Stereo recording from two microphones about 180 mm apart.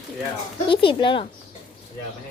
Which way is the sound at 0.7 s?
30° left (ahead or behind).